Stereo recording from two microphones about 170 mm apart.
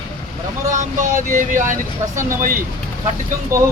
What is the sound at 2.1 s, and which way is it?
Speech, 15° right (ahead or behind).